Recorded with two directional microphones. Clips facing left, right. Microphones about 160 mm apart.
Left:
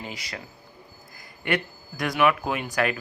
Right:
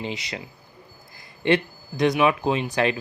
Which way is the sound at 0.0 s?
25° right (ahead or behind).